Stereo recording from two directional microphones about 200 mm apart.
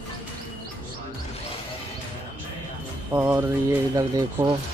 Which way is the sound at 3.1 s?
15° right (ahead or behind).